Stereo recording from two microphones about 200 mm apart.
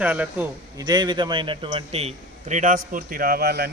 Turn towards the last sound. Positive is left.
turn(degrees=-50)  # may be behind; listen again after turning